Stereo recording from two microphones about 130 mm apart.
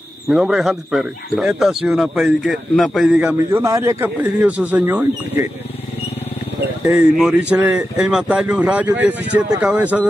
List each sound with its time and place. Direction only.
0.3 s speech: 5° right (ahead or behind)
3.2 s speech: 10° right (ahead or behind)
3.6 s speech: 25° right (ahead or behind)
7.2 s speech: 5° right (ahead or behind)